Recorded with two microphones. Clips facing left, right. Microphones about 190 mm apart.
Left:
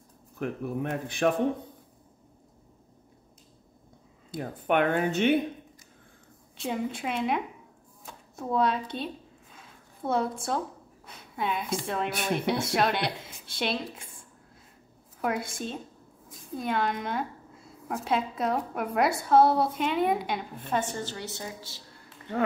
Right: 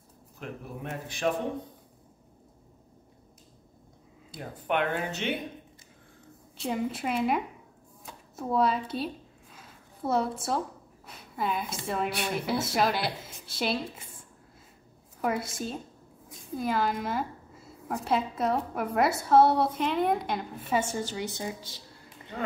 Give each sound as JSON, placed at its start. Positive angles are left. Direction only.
{"t": 0.4, "sound": "a man's voice", "side_deg": 55}
{"t": 4.3, "sound": "speech", "side_deg": 50}
{"t": 6.5, "sound": "a woman's voice", "side_deg": 0}
{"t": 8.0, "sound": "a sound", "side_deg": -5}
{"t": 11.1, "sound": "a woman's voice", "side_deg": 0}
{"t": 15.1, "sound": "a woman's voice", "side_deg": 0}
{"t": 20.8, "sound": "a woman's voice", "side_deg": -10}